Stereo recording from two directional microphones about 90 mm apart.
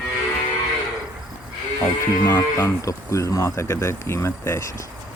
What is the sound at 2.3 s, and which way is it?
Speech, 30° left (ahead or behind).